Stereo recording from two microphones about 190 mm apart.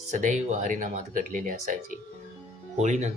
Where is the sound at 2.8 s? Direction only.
35° right (ahead or behind).